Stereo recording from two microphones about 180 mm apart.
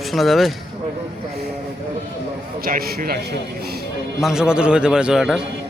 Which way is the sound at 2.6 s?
55° right (ahead or behind).